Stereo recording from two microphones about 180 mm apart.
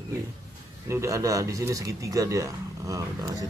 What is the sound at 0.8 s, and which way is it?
Speech, 15° right (ahead or behind).